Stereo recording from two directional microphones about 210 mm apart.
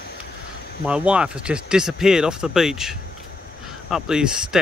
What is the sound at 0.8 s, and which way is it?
Speech, 5° right (ahead or behind).